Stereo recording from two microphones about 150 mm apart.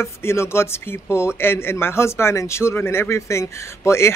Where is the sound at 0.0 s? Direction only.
15° left (ahead or behind).